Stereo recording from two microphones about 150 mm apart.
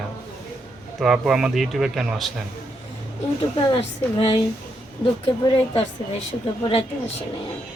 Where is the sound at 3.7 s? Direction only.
35° left (ahead or behind).